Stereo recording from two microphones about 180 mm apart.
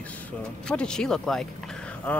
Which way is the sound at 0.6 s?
5° left (ahead or behind).